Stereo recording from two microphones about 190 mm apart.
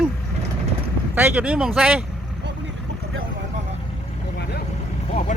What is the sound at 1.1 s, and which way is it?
Speech, 10° right (ahead or behind).